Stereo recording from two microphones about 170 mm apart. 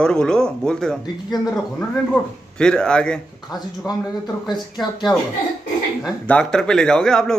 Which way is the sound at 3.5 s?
20° left (ahead or behind).